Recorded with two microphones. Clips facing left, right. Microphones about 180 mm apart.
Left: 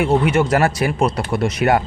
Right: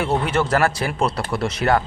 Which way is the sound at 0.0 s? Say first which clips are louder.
Left 5 dB; 15° left (ahead or behind).